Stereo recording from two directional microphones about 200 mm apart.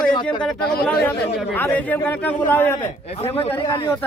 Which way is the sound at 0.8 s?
5° left (ahead or behind).